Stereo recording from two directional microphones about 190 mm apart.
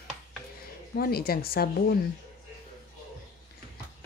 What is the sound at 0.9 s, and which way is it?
Speech, 55° left (ahead or behind).